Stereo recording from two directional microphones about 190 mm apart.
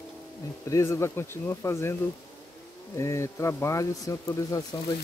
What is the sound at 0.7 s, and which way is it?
A man's voice, 15° left (ahead or behind).